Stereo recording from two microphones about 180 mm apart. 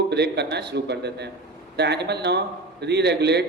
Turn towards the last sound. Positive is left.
turn(degrees=-70)  # may be behind; listen again after turning